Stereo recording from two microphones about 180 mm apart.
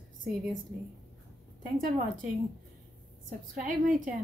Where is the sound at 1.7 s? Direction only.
45° right (ahead or behind).